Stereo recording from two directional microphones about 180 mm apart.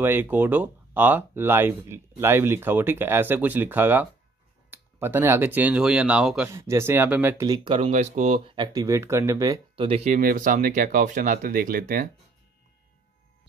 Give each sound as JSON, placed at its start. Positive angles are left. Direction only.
{"t": 0.0, "sound": "speech", "side_deg": -10}
{"t": 7.9, "sound": "speech", "side_deg": -40}
{"t": 9.8, "sound": "speech", "side_deg": -35}